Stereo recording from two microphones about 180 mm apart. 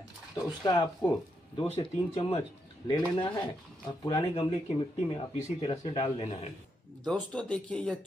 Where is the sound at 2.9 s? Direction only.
25° left (ahead or behind).